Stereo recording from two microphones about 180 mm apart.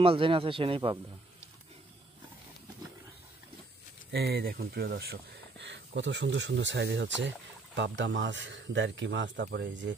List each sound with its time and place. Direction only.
0.0 s speech: 30° right (ahead or behind)
4.1 s speech: 60° right (ahead or behind)